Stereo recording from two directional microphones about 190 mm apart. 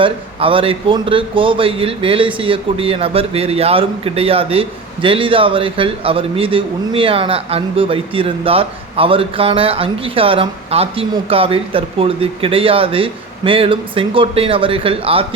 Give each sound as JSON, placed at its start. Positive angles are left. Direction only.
{"t": 0.0, "sound": "a man's voice", "side_deg": -30}